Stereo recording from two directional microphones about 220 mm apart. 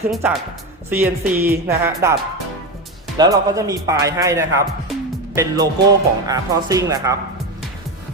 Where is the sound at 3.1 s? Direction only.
15° right (ahead or behind).